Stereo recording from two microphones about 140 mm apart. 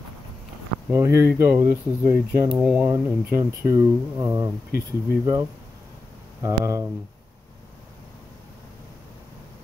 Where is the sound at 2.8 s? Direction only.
20° right (ahead or behind).